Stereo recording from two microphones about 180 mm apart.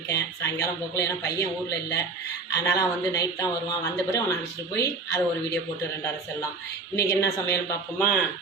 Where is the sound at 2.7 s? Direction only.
20° left (ahead or behind).